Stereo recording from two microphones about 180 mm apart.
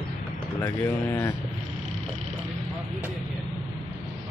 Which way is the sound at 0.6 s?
15° left (ahead or behind).